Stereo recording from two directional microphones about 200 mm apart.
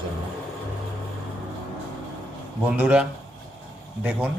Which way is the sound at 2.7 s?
5° right (ahead or behind).